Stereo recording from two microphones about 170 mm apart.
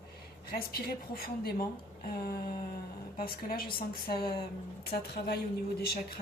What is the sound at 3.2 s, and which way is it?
A woman's voice, 60° left (ahead or behind).